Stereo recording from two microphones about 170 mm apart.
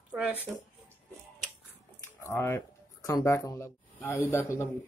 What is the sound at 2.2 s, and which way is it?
Speech, 15° left (ahead or behind).